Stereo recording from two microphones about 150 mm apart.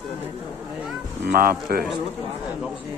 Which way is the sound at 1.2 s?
80° right.